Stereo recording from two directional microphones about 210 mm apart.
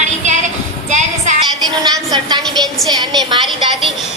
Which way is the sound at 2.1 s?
20° right (ahead or behind).